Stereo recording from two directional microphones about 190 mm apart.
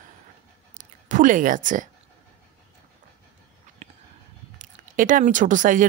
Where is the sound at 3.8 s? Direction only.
35° right (ahead or behind).